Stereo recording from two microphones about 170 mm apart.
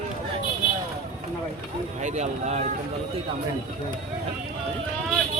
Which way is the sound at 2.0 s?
45° right (ahead or behind).